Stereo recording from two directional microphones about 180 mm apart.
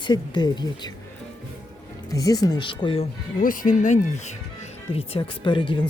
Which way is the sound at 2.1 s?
20° left (ahead or behind).